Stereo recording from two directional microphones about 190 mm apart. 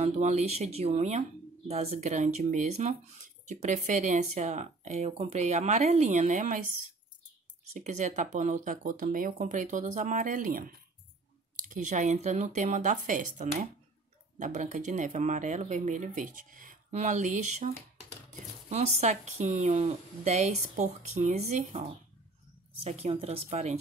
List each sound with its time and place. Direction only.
0.0 s speech: 35° right (ahead or behind)
7.8 s speech: 40° right (ahead or behind)
22.8 s speech: 35° right (ahead or behind)